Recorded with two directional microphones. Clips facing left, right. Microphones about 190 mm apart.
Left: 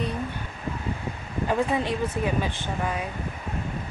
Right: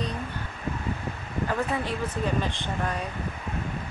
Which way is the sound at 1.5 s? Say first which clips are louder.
Left 5 dB; 20° left (ahead or behind).